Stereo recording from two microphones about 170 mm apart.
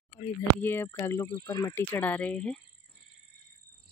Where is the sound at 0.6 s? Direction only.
15° left (ahead or behind).